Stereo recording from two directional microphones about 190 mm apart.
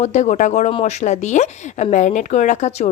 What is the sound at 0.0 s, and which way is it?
Speech, 40° left (ahead or behind).